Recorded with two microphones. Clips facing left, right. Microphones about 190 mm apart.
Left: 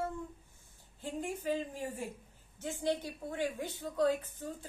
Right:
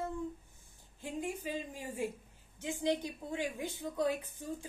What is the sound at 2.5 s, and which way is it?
A woman's voice, 15° right (ahead or behind).